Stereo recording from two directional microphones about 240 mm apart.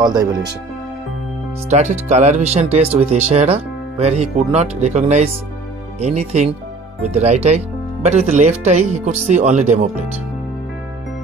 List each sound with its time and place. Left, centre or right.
0.0 s speech: centre
1.7 s speech: right